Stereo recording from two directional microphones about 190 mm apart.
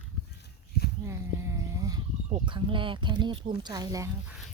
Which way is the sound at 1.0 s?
15° right (ahead or behind).